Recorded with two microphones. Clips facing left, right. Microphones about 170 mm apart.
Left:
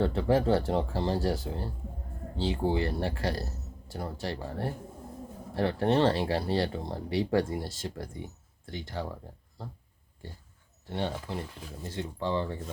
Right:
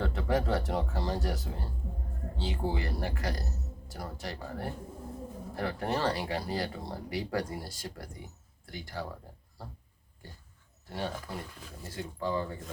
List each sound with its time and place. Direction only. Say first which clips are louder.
0.0 s speech: left 5 dB; 30° left (ahead or behind)
10.8 s speech: left 3 dB; 25° left (ahead or behind)